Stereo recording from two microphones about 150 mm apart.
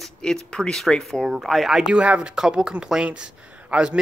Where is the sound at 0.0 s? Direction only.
5° left (ahead or behind).